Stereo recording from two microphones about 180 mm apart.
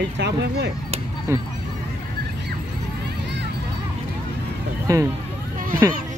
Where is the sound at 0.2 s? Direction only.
70° right (ahead or behind).